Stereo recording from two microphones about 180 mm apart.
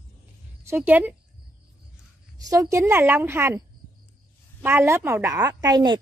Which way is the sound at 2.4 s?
15° right (ahead or behind).